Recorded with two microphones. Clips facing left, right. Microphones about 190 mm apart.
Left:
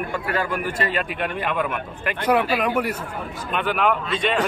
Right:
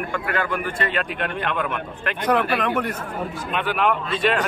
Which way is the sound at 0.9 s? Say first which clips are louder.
Even; 5° left (ahead or behind).